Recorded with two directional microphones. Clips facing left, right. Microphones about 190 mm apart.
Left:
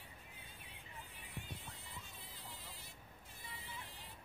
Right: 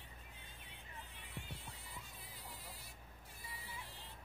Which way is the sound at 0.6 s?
10° left (ahead or behind).